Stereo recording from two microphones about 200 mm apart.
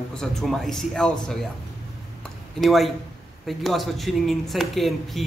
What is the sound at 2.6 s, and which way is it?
A man's voice, centre (ahead or behind).